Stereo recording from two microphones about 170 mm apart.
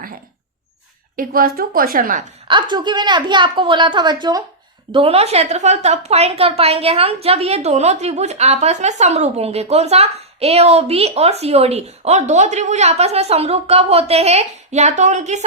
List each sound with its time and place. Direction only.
1.1 s a woman's voice: 55° right (ahead or behind)
2.5 s a woman's voice: 25° right (ahead or behind); by 15.4 s 45° right (ahead or behind)